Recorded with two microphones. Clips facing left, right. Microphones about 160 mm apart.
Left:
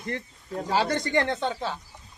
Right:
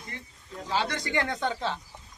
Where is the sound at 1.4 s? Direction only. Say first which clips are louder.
Left 1 dB; 15° left (ahead or behind).